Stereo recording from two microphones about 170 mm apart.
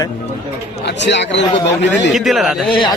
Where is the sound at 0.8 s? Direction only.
90° left.